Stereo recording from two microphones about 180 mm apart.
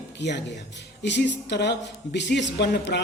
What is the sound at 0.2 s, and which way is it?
Speech, 75° left (ahead or behind).